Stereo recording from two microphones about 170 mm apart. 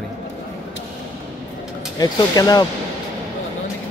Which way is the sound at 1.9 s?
25° left (ahead or behind).